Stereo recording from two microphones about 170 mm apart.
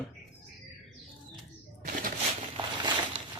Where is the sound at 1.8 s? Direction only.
50° right (ahead or behind).